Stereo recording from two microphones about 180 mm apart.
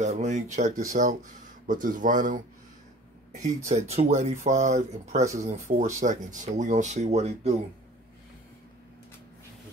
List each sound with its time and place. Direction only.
0.0 s speech: 40° right (ahead or behind)